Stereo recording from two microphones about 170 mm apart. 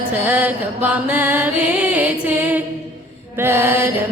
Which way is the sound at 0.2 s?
10° right (ahead or behind).